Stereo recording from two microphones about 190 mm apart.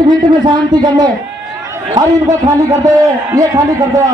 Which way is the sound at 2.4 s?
20° right (ahead or behind).